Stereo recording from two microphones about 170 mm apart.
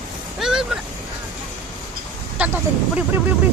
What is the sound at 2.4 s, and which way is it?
Speech, 10° right (ahead or behind).